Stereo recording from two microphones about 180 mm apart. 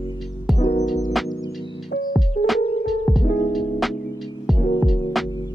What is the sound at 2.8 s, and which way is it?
Music, centre (ahead or behind).